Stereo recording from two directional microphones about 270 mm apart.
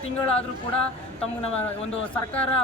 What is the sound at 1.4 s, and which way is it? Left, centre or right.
Speech, left.